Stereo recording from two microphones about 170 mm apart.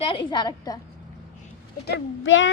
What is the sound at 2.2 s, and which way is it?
Speech, 90° left.